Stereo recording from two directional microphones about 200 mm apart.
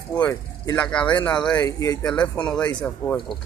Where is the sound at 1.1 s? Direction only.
20° left (ahead or behind).